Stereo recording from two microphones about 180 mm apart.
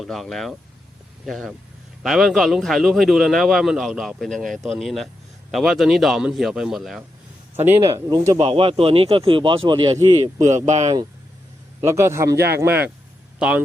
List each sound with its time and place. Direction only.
0.0 s a man's voice: centre (ahead or behind); by 8.2 s 15° right (ahead or behind)
8.3 s a man's voice: 30° right (ahead or behind)
10.7 s speech: 40° right (ahead or behind)
11.9 s a man's voice: 15° right (ahead or behind)